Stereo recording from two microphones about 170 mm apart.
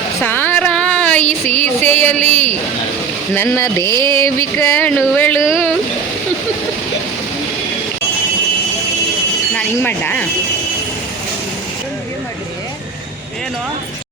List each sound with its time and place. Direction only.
0.2 s a sound: 10° left (ahead or behind)
1.3 s music: 10° left (ahead or behind)
2.2 s speech: 10° left (ahead or behind)
9.6 s speech: 10° left (ahead or behind)